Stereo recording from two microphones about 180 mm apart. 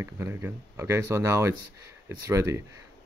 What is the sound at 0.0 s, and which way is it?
Speech, 15° right (ahead or behind).